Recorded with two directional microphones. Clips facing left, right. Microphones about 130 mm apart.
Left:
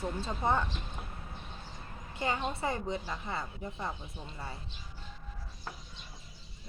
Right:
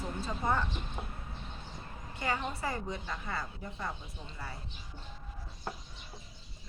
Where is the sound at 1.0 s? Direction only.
25° right (ahead or behind).